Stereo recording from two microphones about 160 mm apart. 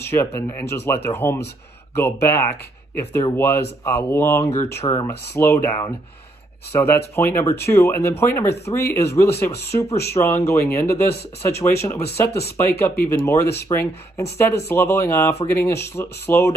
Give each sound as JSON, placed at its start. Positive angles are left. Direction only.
{"t": 0.1, "sound": "speech", "side_deg": 15}
{"t": 6.7, "sound": "speech", "side_deg": 15}